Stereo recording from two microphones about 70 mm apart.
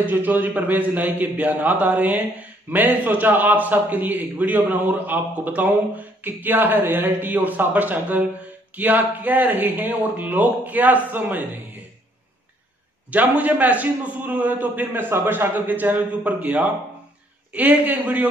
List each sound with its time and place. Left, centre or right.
0.0 s a man's voice: right
13.1 s a man's voice: right